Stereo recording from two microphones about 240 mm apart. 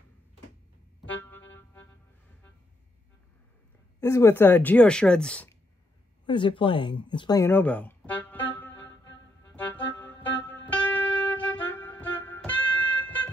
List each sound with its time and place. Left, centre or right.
4.0 s a woman's voice: centre
6.2 s speech: centre
10.0 s music: centre